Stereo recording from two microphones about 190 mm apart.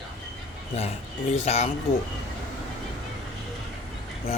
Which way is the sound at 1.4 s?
35° left (ahead or behind).